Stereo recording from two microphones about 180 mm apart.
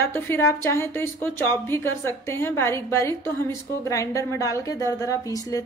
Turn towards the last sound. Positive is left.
turn(degrees=20)  # may be behind; listen again after turning